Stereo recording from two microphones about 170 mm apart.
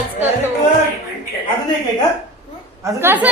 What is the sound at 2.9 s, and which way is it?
Speech, 10° right (ahead or behind).